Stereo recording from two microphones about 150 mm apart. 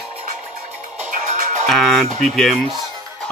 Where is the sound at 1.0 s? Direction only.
55° right (ahead or behind).